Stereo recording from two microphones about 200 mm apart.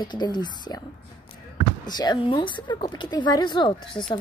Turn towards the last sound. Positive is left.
turn(degrees=25)  # may be behind; listen again after turning